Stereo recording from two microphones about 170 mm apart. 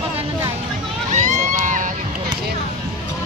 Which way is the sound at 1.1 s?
45° right (ahead or behind).